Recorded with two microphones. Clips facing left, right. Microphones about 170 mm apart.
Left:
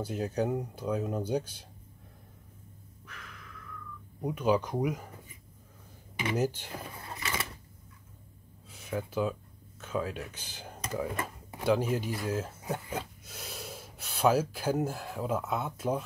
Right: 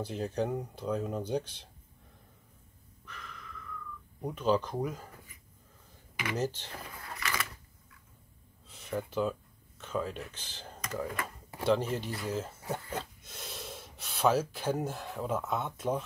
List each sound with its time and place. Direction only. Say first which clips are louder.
0.0 s speech: left 2 dB; 5° left (ahead or behind)
3.1 s a sound: right 2 dB; 5° left (ahead or behind)
4.2 s speech: left 1 dB; 10° left (ahead or behind)
6.8 s vehicle: right 2 dB; 25° left (ahead or behind)
8.6 s a sound: even; 5° left (ahead or behind)
9.8 s speech: left 1 dB; 5° left (ahead or behind)